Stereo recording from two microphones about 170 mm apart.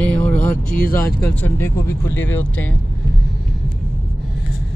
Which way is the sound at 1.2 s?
10° left (ahead or behind).